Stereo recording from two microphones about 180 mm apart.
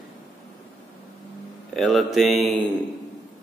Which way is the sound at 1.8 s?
Centre (ahead or behind).